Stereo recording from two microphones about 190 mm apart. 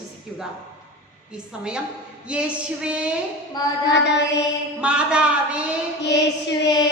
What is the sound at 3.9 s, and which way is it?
Mantra, 65° left (ahead or behind).